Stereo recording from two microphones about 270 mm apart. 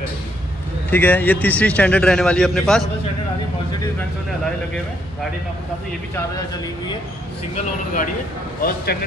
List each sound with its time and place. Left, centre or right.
0.8 s a man's voice: centre
8.5 s a man's voice: left